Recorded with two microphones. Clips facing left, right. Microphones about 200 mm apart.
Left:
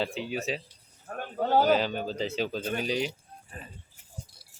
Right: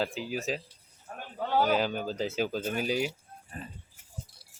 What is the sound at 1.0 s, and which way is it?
Snake, 45° left (ahead or behind).